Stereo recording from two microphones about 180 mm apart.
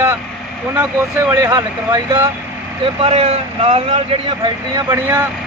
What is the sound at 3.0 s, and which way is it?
A man's voice, 35° right (ahead or behind).